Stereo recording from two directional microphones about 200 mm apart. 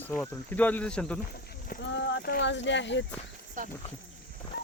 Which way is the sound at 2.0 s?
65° left (ahead or behind).